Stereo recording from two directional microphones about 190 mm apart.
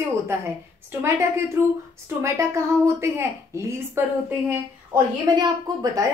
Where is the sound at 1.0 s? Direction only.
15° right (ahead or behind).